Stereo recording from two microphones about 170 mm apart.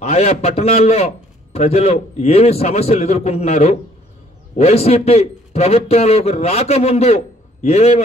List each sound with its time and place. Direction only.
0.0 s a man's voice: 40° left (ahead or behind)